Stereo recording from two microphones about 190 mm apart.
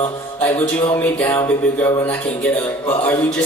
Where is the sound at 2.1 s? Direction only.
10° left (ahead or behind).